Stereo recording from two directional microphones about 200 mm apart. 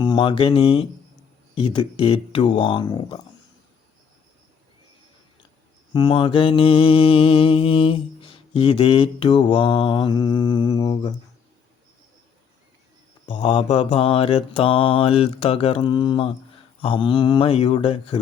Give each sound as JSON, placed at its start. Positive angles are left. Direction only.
{"t": 0.0, "sound": "mantra", "side_deg": 25}
{"t": 5.9, "sound": "mantra", "side_deg": 20}
{"t": 13.2, "sound": "speech", "side_deg": 35}
{"t": 13.5, "sound": "mantra", "side_deg": 30}